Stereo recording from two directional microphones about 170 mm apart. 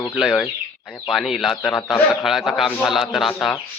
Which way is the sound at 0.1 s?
Centre (ahead or behind).